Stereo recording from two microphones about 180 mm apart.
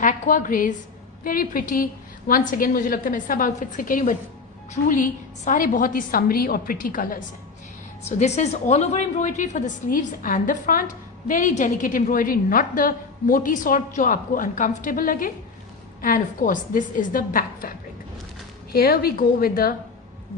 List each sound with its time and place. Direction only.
0.0 s a woman's voice: 45° left (ahead or behind)
8.0 s a woman's voice: 40° left (ahead or behind)
18.7 s a woman's voice: 55° left (ahead or behind)